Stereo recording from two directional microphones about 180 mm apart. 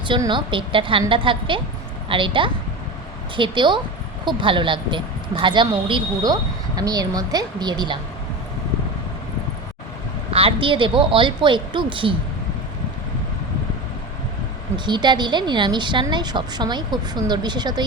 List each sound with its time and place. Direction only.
0.1 s speech: 25° right (ahead or behind)
10.3 s speech: 30° right (ahead or behind)
14.8 s speech: 25° right (ahead or behind)